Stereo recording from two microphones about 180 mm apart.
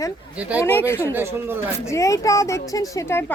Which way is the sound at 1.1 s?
10° right (ahead or behind).